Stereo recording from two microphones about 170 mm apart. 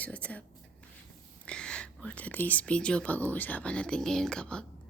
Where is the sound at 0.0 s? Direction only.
10° left (ahead or behind).